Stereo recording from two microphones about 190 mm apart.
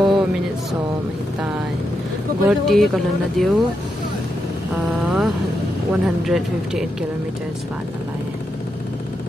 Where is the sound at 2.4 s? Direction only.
Centre (ahead or behind).